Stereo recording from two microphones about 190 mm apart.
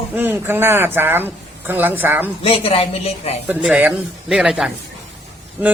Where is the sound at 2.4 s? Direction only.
30° left (ahead or behind).